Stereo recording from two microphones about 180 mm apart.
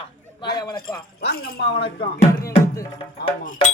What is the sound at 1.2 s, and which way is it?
Speech, 60° left (ahead or behind).